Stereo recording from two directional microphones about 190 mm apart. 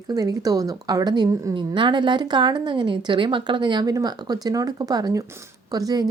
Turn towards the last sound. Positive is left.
turn(degrees=-20)  # may be behind; listen again after turning